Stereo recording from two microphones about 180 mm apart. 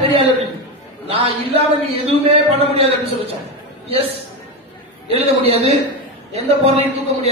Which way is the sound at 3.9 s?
30° right (ahead or behind).